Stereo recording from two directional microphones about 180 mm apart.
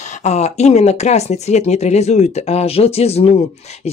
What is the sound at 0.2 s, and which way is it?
Speech, 40° left (ahead or behind).